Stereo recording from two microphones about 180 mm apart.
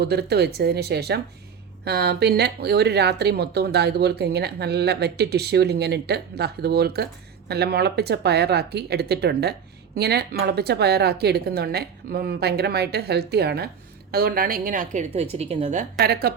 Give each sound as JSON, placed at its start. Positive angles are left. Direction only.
{"t": 0.0, "sound": "a woman's voice", "side_deg": -60}